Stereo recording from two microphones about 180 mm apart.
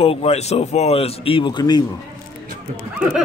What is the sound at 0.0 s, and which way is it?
Speech, 35° left (ahead or behind).